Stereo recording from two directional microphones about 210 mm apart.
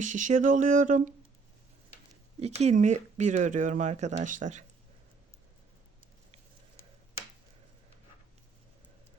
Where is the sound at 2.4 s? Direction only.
30° right (ahead or behind).